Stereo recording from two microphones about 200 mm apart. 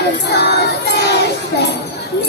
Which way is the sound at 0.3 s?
55° left (ahead or behind).